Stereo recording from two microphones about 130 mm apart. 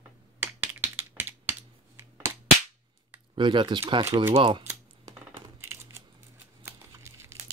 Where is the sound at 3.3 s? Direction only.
40° right (ahead or behind).